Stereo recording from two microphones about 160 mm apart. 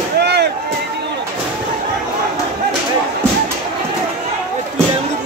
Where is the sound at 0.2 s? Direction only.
90° right.